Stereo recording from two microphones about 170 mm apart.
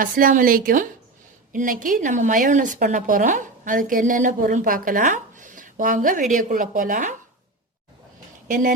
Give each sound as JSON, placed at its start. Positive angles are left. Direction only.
{"t": 0.0, "sound": "a woman's voice", "side_deg": -55}
{"t": 8.4, "sound": "a woman's voice", "side_deg": -50}